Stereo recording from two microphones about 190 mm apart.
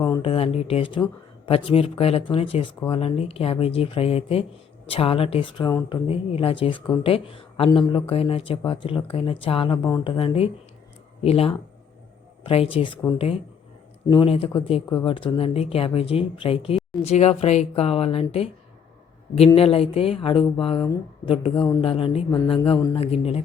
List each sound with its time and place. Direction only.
0.2 s speech: 30° left (ahead or behind)
19.5 s speech: 30° left (ahead or behind)
23.0 s speech: 30° left (ahead or behind)